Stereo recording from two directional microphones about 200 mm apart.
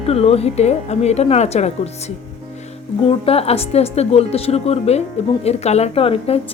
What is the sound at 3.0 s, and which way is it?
A woman's voice, 30° left (ahead or behind).